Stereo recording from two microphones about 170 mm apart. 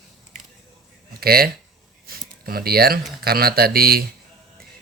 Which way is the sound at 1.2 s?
65° right (ahead or behind).